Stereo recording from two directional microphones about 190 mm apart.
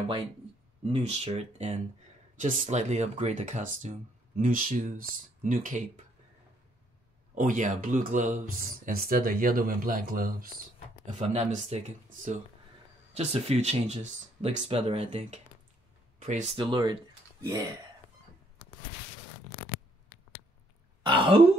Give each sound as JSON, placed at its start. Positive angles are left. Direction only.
{"t": 0.8, "sound": "speech", "side_deg": -30}
{"t": 7.3, "sound": "speech", "side_deg": -45}
{"t": 11.1, "sound": "speech", "side_deg": -35}
{"t": 16.5, "sound": "speech", "side_deg": -25}
{"t": 21.0, "sound": "throat clearing", "side_deg": -30}